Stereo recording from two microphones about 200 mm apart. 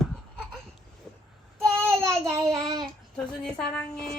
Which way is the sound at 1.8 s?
10° right (ahead or behind).